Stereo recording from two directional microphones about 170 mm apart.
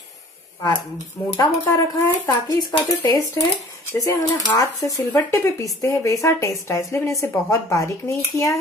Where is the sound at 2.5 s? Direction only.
25° left (ahead or behind).